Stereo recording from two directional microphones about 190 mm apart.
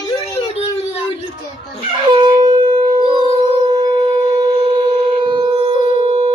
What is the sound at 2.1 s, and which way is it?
Shofar, 20° right (ahead or behind).